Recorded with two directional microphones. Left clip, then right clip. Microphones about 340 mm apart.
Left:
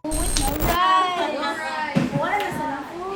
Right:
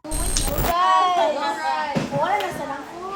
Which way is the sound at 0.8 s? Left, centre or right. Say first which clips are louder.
Right 2 dB; right.